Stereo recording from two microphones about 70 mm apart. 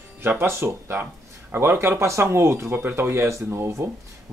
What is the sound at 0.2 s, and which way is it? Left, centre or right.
Speech, right.